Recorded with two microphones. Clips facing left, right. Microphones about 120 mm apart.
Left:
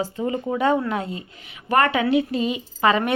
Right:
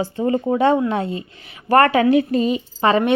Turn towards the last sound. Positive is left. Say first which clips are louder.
# right 3 dB
turn(degrees=-30)  # may be behind; listen again after turning